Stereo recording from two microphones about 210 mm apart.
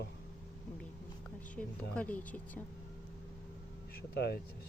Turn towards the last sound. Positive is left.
turn(degrees=50)  # may be behind; listen again after turning